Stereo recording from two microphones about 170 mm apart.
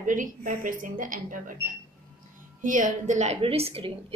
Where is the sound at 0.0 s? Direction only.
50° right (ahead or behind).